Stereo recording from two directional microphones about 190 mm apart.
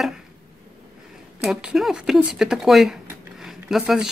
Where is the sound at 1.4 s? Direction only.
Centre (ahead or behind).